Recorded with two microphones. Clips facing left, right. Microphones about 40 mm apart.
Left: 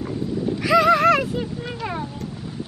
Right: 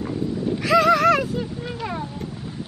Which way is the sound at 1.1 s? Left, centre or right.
Centre.